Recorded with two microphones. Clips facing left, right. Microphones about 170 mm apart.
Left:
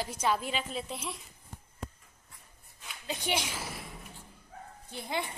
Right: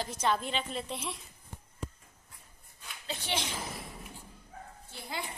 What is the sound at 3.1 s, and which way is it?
Speech, 15° left (ahead or behind).